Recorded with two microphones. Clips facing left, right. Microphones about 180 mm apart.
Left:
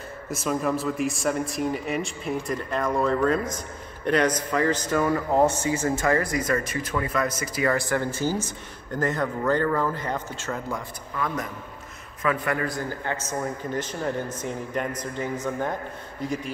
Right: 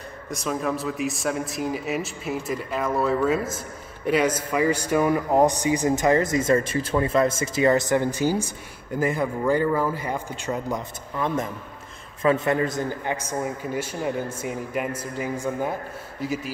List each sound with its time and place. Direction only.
0.3 s a man's voice: centre (ahead or behind)